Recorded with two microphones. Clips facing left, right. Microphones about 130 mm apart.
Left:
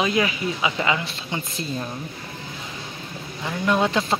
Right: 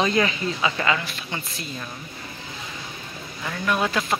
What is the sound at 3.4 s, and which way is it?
Speech, 20° left (ahead or behind).